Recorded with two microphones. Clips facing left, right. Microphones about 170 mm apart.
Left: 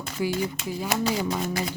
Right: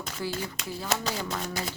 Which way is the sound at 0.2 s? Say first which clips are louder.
Left 8 dB; 15° left (ahead or behind).